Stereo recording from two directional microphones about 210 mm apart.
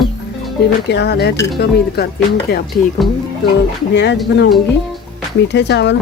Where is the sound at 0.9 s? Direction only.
50° left (ahead or behind).